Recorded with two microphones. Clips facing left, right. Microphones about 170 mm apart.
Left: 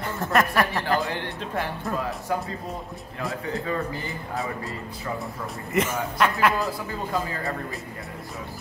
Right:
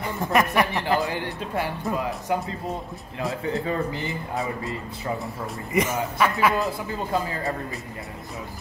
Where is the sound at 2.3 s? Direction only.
15° right (ahead or behind).